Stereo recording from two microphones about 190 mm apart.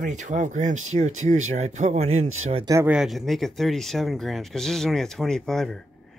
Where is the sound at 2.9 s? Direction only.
Centre (ahead or behind).